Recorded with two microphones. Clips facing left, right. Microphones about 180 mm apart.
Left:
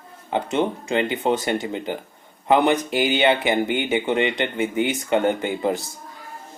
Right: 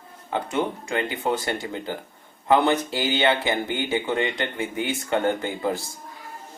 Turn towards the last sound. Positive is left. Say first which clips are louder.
# left 3 dB
turn(degrees=20)  # may be behind; listen again after turning